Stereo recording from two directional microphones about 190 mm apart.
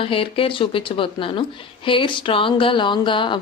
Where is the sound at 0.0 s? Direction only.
30° left (ahead or behind).